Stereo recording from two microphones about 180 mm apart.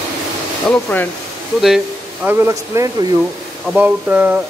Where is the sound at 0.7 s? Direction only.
5° left (ahead or behind).